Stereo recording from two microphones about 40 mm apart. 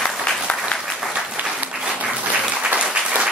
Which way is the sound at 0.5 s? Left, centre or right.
Left.